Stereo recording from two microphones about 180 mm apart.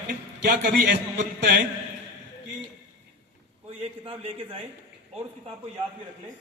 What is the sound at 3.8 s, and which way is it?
Speech, 30° right (ahead or behind).